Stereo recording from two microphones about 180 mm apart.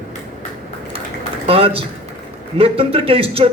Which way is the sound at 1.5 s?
30° right (ahead or behind).